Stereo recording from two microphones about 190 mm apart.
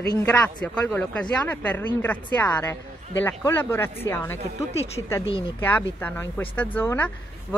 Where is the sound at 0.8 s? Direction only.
5° left (ahead or behind).